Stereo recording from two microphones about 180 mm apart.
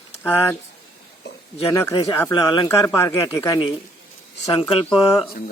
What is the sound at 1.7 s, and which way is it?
Speech, 15° left (ahead or behind).